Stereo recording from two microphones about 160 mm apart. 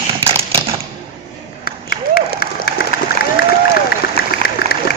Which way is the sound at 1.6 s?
75° left (ahead or behind).